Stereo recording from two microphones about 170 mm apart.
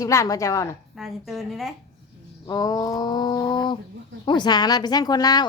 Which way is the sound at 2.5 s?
20° left (ahead or behind).